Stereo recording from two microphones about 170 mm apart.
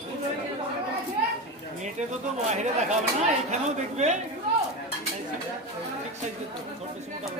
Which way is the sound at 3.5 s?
40° right (ahead or behind).